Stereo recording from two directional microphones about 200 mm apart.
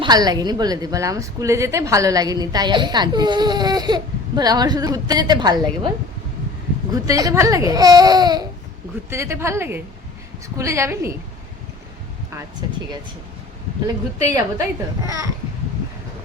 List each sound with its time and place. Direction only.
0.0 s a woman's voice: 20° right (ahead or behind)
6.9 s speech: 15° right (ahead or behind)
12.6 s a woman's voice: 20° right (ahead or behind)
13.8 s speech: 15° right (ahead or behind)